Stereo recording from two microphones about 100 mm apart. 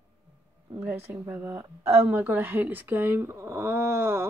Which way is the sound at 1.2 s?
20° right (ahead or behind).